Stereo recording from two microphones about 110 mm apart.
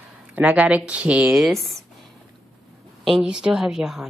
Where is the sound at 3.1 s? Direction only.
5° right (ahead or behind).